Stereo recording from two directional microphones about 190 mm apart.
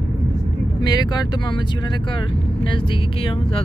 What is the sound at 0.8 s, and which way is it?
Speech, 20° left (ahead or behind).